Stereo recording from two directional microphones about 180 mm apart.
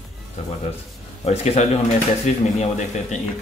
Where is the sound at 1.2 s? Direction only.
35° left (ahead or behind).